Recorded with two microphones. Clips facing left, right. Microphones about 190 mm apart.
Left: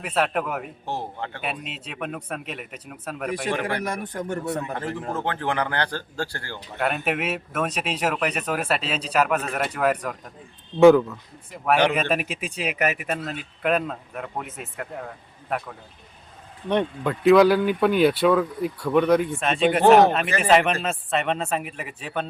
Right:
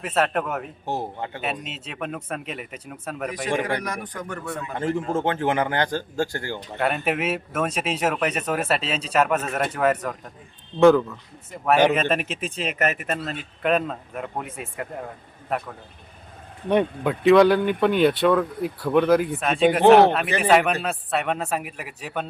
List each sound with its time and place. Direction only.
0.1 s speech: centre (ahead or behind)
0.9 s a man's voice: 15° right (ahead or behind)
1.4 s speech: centre (ahead or behind)
3.8 s a man's voice: 25° left (ahead or behind)
5.0 s speech: 25° right (ahead or behind)
6.7 s speech: centre (ahead or behind)
16.6 s speech: 5° right (ahead or behind)